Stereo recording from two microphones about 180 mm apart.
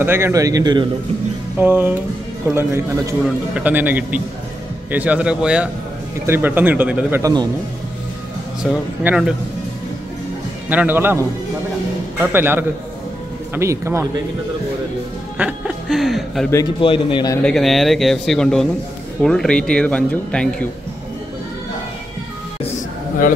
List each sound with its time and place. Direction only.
0.0 s a man's voice: 15° right (ahead or behind)
8.6 s speech: 5° right (ahead or behind)
10.7 s speech: 10° right (ahead or behind)
15.3 s speech: 5° right (ahead or behind)
16.8 s a man's voice: 30° left (ahead or behind)
17.4 s speech: 5° left (ahead or behind)